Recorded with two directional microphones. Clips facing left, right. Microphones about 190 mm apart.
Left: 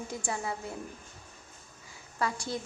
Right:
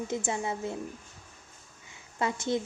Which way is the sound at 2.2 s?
20° right (ahead or behind).